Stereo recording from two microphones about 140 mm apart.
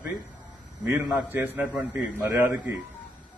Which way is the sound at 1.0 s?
10° right (ahead or behind).